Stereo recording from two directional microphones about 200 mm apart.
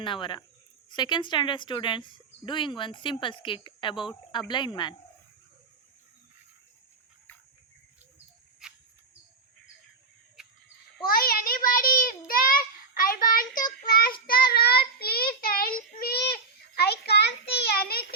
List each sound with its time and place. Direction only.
0.0 s speech: 25° left (ahead or behind)
8.6 s cricket: 5° right (ahead or behind)
10.4 s sheep: 5° right (ahead or behind)
11.1 s child singing: 45° left (ahead or behind)